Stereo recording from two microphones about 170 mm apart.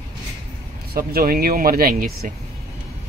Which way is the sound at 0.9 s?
60° right (ahead or behind).